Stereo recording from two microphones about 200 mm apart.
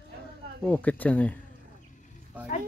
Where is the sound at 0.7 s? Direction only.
5° left (ahead or behind).